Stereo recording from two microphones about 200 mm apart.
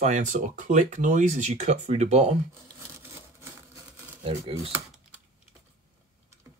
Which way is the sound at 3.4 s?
10° right (ahead or behind).